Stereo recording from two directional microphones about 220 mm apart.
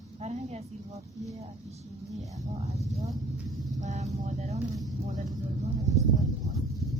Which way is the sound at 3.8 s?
30° right (ahead or behind).